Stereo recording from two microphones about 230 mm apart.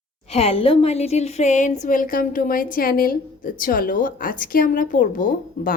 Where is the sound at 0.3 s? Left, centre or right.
Left.